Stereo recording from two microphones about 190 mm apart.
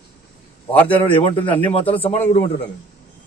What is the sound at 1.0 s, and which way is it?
A man's voice, 25° left (ahead or behind).